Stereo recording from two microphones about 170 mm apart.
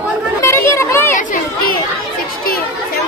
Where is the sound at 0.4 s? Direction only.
15° left (ahead or behind).